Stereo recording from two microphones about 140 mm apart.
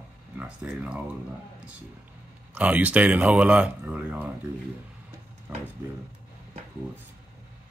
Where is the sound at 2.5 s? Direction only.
10° right (ahead or behind).